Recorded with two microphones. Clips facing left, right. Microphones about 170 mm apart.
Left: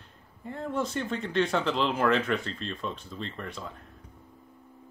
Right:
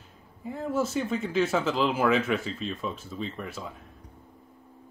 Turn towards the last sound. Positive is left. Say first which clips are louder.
# right 2 dB
turn(degrees=-5)  # may be behind; listen again after turning